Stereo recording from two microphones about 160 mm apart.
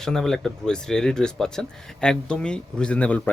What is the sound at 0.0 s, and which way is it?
Speech, 5° left (ahead or behind).